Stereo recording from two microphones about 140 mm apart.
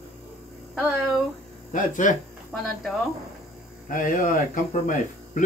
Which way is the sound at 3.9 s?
75° left (ahead or behind).